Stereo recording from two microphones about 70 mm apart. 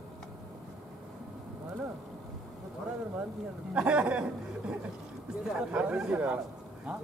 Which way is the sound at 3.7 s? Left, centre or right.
Centre.